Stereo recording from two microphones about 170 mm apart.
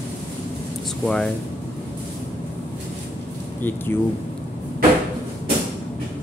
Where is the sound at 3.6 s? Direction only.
10° left (ahead or behind).